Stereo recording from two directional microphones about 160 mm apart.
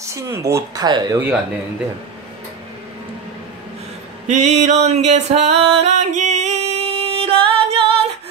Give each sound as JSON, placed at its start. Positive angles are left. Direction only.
{"t": 0.0, "sound": "speech", "side_deg": -20}
{"t": 4.3, "sound": "music", "side_deg": -45}